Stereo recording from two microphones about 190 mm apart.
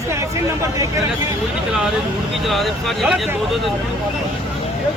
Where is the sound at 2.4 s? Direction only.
Centre (ahead or behind).